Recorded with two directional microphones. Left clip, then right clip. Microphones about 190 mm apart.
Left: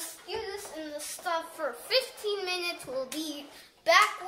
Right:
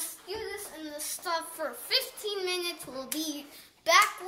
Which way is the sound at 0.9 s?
Centre (ahead or behind).